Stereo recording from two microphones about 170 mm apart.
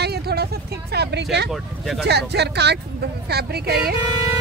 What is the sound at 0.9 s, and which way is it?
Speech, 75° right (ahead or behind).